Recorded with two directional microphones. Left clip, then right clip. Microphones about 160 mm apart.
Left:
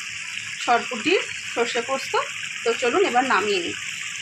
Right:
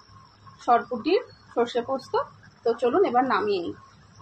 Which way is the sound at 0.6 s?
5° left (ahead or behind).